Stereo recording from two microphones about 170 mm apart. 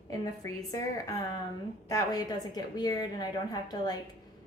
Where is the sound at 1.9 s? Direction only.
20° left (ahead or behind).